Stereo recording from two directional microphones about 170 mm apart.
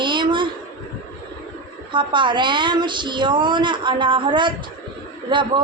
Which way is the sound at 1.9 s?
30° right (ahead or behind).